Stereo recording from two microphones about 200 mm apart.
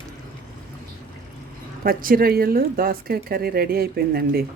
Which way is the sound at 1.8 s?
45° right (ahead or behind).